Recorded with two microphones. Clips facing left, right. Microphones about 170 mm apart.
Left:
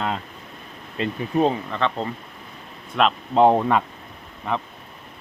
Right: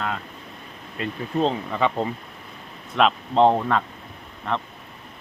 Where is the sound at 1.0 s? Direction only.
25° left (ahead or behind).